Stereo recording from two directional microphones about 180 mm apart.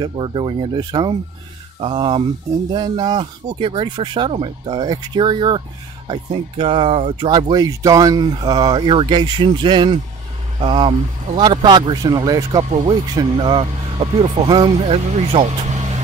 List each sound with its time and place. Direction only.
0.0 s speech: 25° right (ahead or behind)
6.6 s speech: 30° right (ahead or behind)